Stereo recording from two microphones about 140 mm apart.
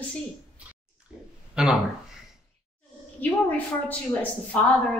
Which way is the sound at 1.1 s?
5° right (ahead or behind).